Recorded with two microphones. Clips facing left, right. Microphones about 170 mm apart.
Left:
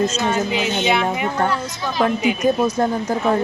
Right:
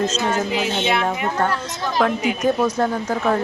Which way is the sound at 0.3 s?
Centre (ahead or behind).